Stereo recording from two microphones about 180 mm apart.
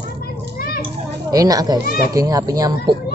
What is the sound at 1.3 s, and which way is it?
Speech, 20° right (ahead or behind).